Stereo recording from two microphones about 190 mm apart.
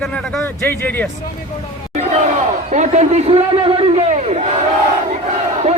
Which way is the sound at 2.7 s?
40° right (ahead or behind).